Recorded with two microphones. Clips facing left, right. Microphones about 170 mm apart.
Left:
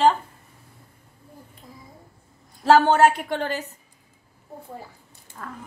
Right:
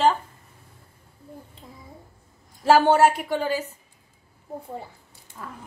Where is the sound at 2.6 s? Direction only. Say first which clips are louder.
Left 1 dB; 10° right (ahead or behind).